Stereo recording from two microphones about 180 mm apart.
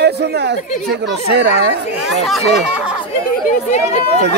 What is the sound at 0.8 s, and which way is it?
Speech, 65° right (ahead or behind).